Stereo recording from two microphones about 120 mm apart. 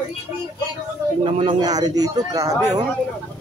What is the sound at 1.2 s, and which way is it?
Speech, 45° right (ahead or behind).